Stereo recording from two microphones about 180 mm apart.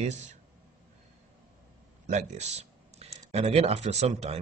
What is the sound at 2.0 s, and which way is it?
Speech, 40° right (ahead or behind).